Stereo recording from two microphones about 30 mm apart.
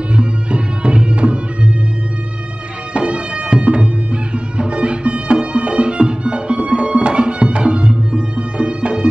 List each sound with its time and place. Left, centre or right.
0.1 s music: right
2.9 s music: right